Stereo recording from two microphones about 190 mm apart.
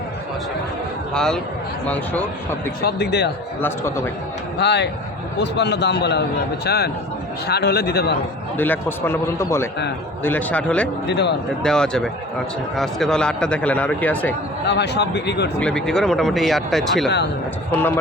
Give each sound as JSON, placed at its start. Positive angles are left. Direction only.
{"t": 1.1, "sound": "speech", "side_deg": 5}
{"t": 2.8, "sound": "a man's voice", "side_deg": 60}
{"t": 3.6, "sound": "a man's voice", "side_deg": 15}
{"t": 4.5, "sound": "a man's voice", "side_deg": 65}
{"t": 8.5, "sound": "a man's voice", "side_deg": 10}
{"t": 11.0, "sound": "a man's voice", "side_deg": 60}
{"t": 11.6, "sound": "speech", "side_deg": 5}
{"t": 14.7, "sound": "a man's voice", "side_deg": 65}
{"t": 15.6, "sound": "speech", "side_deg": 5}